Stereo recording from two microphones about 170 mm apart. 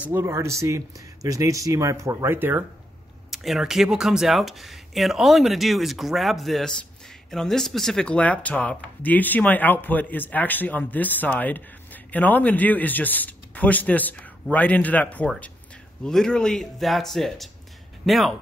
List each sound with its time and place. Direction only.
0.0 s speech: 15° right (ahead or behind)
3.3 s speech: centre (ahead or behind)